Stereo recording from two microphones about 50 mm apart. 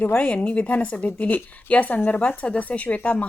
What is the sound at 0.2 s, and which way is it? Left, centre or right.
Speech, left.